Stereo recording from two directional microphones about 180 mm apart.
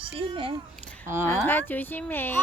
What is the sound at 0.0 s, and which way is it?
Speech, 30° right (ahead or behind).